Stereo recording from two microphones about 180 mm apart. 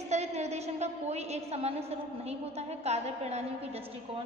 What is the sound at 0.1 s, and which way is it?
A woman's voice, 40° right (ahead or behind).